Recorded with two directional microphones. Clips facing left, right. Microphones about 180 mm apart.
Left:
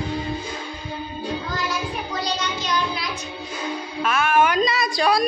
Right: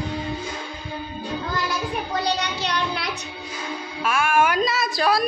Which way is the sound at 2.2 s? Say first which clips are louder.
Right 2 dB; 65° right (ahead or behind).